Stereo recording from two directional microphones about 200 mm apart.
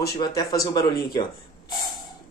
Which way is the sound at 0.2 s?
20° left (ahead or behind).